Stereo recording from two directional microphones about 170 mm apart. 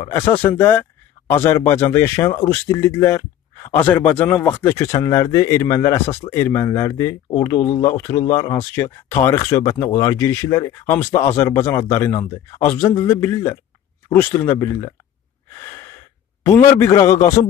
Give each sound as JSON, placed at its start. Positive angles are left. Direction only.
{"t": 0.0, "sound": "speech", "side_deg": 15}
{"t": 15.5, "sound": "gasp", "side_deg": 15}
{"t": 16.4, "sound": "speech", "side_deg": 15}